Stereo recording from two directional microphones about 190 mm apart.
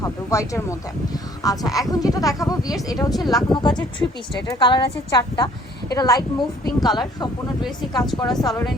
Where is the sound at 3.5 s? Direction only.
25° left (ahead or behind).